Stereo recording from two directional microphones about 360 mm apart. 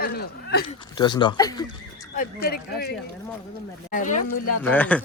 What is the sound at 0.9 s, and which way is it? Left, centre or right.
Speech, centre.